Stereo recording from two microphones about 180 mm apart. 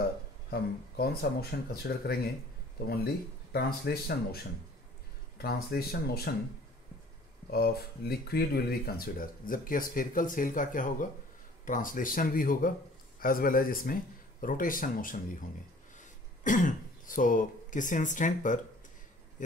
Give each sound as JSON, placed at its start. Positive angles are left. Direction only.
{"t": 0.5, "sound": "speech", "side_deg": 60}
{"t": 3.5, "sound": "speech", "side_deg": 60}
{"t": 5.4, "sound": "speech", "side_deg": 60}
{"t": 7.5, "sound": "speech", "side_deg": 55}